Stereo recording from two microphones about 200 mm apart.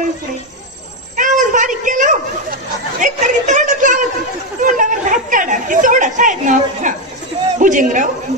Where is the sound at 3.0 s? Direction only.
40° right (ahead or behind).